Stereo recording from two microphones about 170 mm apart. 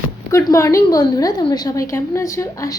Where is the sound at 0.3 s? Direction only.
20° left (ahead or behind).